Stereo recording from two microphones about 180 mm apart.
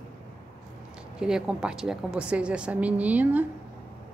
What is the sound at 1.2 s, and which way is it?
A woman's voice, 5° right (ahead or behind).